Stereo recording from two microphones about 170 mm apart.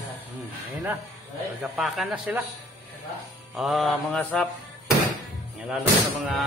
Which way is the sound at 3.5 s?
Centre (ahead or behind).